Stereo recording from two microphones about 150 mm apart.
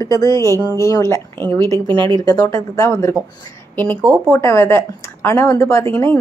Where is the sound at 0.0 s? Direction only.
20° left (ahead or behind).